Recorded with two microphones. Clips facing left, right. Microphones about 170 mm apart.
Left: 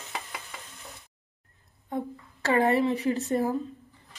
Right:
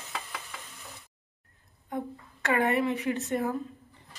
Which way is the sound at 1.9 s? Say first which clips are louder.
Left 2 dB; 30° left (ahead or behind).